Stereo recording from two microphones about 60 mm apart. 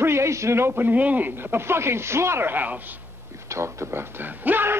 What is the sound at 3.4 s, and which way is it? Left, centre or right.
A man's voice, right.